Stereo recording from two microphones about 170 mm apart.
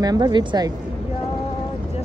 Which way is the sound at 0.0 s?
25° right (ahead or behind).